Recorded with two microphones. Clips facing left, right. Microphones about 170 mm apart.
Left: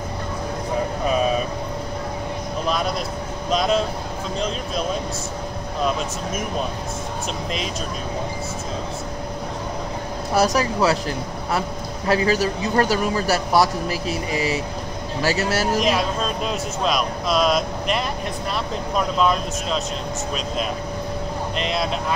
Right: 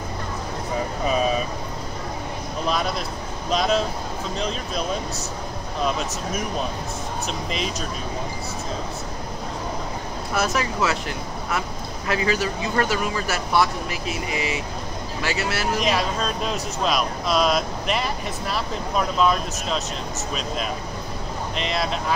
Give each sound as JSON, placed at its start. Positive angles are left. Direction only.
{"t": 1.0, "sound": "vehicle", "side_deg": 0}
{"t": 3.4, "sound": "speech", "side_deg": 0}
{"t": 10.3, "sound": "a man's voice", "side_deg": 35}
{"t": 15.8, "sound": "speech", "side_deg": 0}
{"t": 21.5, "sound": "speech", "side_deg": 0}